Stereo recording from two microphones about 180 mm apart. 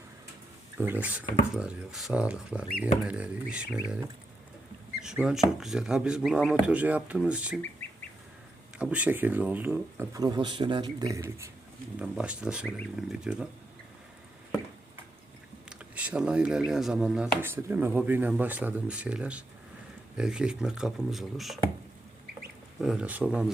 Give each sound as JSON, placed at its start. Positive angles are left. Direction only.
{"t": 0.8, "sound": "speech", "side_deg": -10}
{"t": 5.0, "sound": "speech", "side_deg": -5}
{"t": 8.8, "sound": "speech", "side_deg": -10}
{"t": 15.7, "sound": "speech", "side_deg": -5}